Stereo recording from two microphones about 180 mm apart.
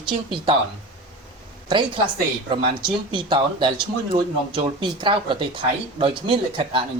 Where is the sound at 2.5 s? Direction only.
25° right (ahead or behind).